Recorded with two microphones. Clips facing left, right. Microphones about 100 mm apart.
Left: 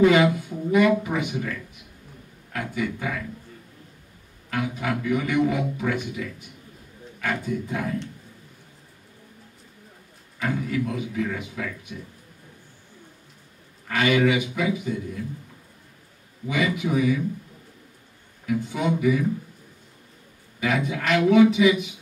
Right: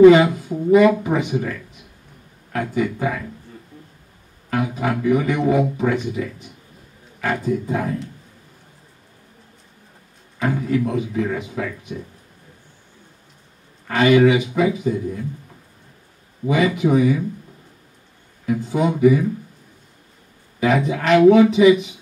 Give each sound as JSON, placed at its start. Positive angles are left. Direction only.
{"t": 0.1, "sound": "speech", "side_deg": -30}
{"t": 2.5, "sound": "a man's voice", "side_deg": -35}
{"t": 4.5, "sound": "a man's voice", "side_deg": -35}
{"t": 10.4, "sound": "a man's voice", "side_deg": -35}
{"t": 13.8, "sound": "a man's voice", "side_deg": -30}
{"t": 16.4, "sound": "a man's voice", "side_deg": -35}
{"t": 18.5, "sound": "a man's voice", "side_deg": -35}
{"t": 20.6, "sound": "a man's voice", "side_deg": -30}